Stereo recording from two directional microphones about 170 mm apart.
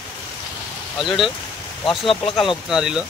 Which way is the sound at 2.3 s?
Centre (ahead or behind).